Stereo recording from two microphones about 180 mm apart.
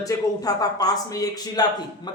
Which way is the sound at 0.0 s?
20° left (ahead or behind).